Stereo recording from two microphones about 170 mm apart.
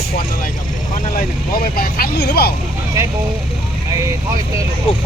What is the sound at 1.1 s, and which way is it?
Speech, 60° left (ahead or behind).